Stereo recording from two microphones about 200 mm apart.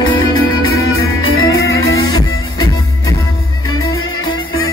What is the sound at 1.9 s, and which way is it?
Music, 20° left (ahead or behind).